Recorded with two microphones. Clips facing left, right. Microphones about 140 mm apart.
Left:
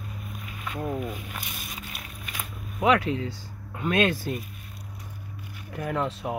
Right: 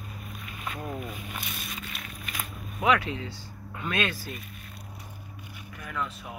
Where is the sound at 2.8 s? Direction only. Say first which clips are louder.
Left 3 dB; 35° left (ahead or behind).